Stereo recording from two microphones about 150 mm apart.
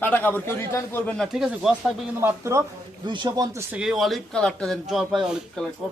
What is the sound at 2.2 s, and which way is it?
Speech, 20° right (ahead or behind).